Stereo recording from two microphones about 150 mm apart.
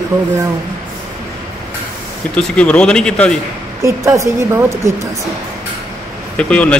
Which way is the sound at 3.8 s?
20° right (ahead or behind).